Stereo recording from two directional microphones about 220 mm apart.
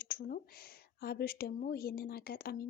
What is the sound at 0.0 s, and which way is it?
A woman's voice, 40° left (ahead or behind).